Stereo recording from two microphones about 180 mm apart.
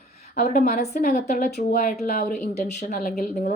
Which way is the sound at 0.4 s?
55° left (ahead or behind).